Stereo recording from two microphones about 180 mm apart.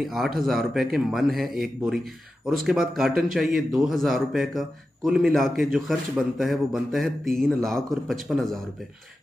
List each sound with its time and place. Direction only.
0.0 s speech: centre (ahead or behind)